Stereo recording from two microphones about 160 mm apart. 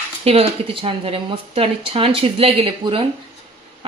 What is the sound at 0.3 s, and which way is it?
Speech, 35° right (ahead or behind).